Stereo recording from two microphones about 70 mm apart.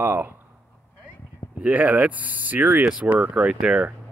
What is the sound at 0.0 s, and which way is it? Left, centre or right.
Speech, right.